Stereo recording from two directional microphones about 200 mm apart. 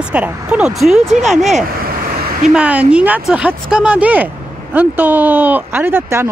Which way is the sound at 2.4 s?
5° right (ahead or behind).